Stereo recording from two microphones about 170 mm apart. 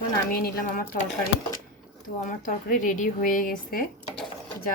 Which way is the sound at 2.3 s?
50° left (ahead or behind).